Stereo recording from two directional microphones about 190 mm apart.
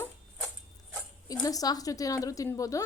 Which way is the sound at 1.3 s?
20° left (ahead or behind).